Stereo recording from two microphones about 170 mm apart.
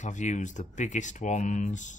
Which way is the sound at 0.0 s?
45° left (ahead or behind).